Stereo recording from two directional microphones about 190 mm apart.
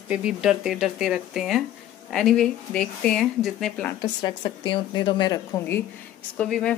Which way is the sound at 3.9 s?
25° left (ahead or behind).